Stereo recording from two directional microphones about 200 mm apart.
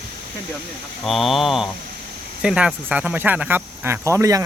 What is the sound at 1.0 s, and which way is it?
Speech, centre (ahead or behind).